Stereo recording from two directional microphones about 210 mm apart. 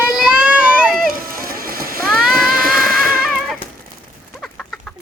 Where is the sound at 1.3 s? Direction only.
45° right (ahead or behind).